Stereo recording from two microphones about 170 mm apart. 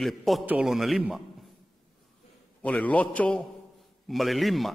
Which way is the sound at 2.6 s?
10° left (ahead or behind).